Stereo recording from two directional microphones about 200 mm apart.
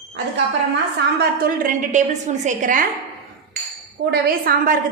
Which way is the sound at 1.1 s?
45° right (ahead or behind).